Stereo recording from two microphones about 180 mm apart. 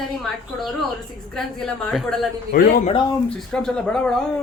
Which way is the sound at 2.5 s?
55° left (ahead or behind).